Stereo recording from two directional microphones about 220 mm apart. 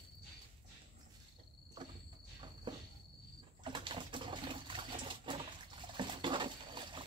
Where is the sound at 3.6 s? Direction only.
20° right (ahead or behind).